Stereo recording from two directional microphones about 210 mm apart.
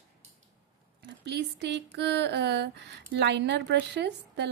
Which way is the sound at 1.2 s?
55° right (ahead or behind).